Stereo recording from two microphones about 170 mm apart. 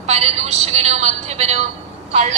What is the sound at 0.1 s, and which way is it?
A woman's voice, 40° right (ahead or behind).